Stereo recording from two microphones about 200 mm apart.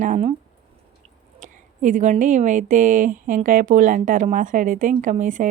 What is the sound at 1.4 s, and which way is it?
Speech, 40° right (ahead or behind).